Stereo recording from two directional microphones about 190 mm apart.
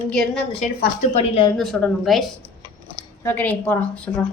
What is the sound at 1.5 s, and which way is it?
A woman's voice, centre (ahead or behind).